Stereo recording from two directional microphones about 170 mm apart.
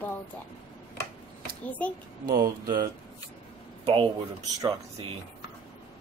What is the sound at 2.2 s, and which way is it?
Speech, 55° right (ahead or behind).